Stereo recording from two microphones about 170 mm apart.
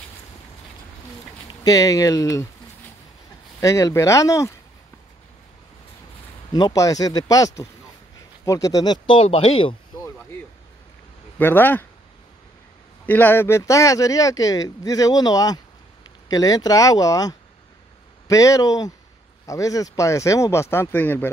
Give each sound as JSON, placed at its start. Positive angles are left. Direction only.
{"t": 1.6, "sound": "speech", "side_deg": 20}
{"t": 3.6, "sound": "speech", "side_deg": 20}
{"t": 6.5, "sound": "speech", "side_deg": 20}
{"t": 11.3, "sound": "speech", "side_deg": 10}
{"t": 13.0, "sound": "speech", "side_deg": 10}